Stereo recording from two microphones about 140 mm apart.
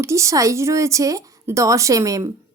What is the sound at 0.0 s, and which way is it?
Speech, 20° right (ahead or behind).